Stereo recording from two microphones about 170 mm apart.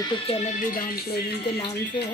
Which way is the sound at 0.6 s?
55° left (ahead or behind).